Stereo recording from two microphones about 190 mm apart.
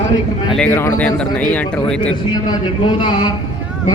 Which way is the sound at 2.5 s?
25° left (ahead or behind).